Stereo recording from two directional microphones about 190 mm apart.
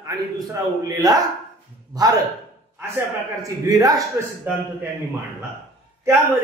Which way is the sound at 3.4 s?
15° right (ahead or behind).